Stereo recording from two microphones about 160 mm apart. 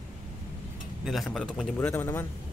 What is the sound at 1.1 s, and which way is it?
Speech, centre (ahead or behind).